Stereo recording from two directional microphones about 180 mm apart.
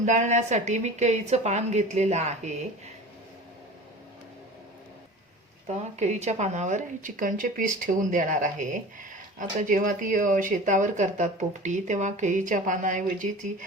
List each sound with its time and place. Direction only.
0.0 s a woman's voice: 45° right (ahead or behind)
5.6 s a woman's voice: 40° right (ahead or behind)